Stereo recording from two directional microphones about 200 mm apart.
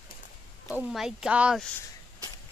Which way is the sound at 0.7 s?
5° right (ahead or behind).